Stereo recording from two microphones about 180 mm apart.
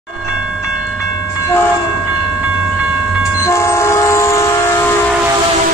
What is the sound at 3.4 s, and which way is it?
Train, 15° left (ahead or behind).